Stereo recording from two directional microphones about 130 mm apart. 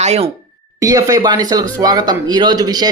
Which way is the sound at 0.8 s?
25° right (ahead or behind).